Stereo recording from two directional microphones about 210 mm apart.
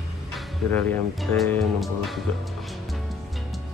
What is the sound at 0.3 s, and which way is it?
Speech, 5° left (ahead or behind).